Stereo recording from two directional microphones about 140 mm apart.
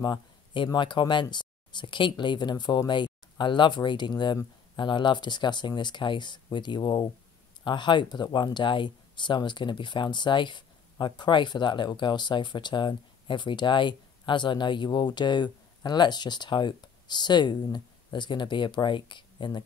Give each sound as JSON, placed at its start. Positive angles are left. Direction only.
{"t": 0.0, "sound": "speech", "side_deg": 35}